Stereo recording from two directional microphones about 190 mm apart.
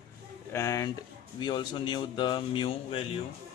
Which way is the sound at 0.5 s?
15° left (ahead or behind).